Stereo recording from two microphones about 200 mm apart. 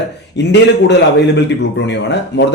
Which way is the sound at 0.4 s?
60° left (ahead or behind).